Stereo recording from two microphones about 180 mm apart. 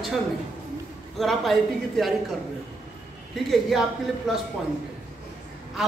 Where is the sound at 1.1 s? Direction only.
Centre (ahead or behind).